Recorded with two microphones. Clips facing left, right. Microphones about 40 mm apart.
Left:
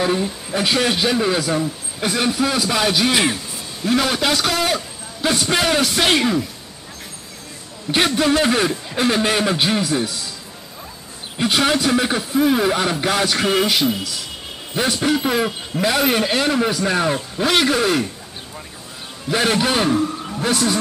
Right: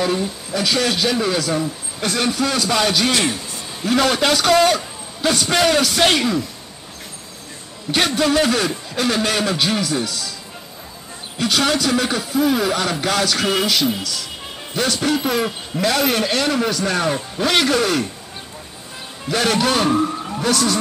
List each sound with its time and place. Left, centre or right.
0.0 s a man's voice: centre
3.8 s a man's voice: centre
7.9 s a man's voice: centre
11.3 s a man's voice: centre
19.2 s a man's voice: centre